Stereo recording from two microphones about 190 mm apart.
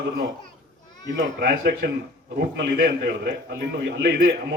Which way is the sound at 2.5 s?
55° right (ahead or behind).